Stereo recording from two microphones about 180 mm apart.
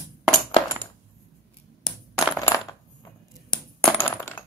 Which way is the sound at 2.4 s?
20° left (ahead or behind).